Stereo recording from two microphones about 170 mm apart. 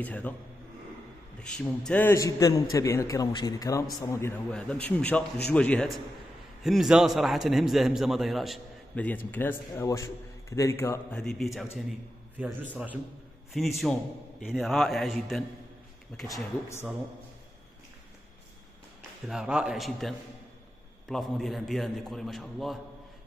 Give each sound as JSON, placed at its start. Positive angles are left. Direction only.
{"t": 0.0, "sound": "a man's voice", "side_deg": 10}
{"t": 1.4, "sound": "a man's voice", "side_deg": 5}
{"t": 11.1, "sound": "a man's voice", "side_deg": 0}
{"t": 19.2, "sound": "a man's voice", "side_deg": -5}